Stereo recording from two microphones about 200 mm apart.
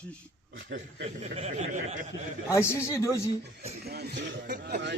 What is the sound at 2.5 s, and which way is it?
Speech, 15° left (ahead or behind).